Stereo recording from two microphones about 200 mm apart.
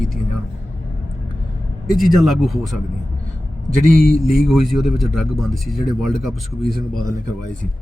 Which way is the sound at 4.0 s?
Centre (ahead or behind).